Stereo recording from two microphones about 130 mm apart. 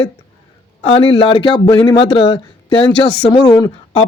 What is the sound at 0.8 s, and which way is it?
Speech, 45° left (ahead or behind).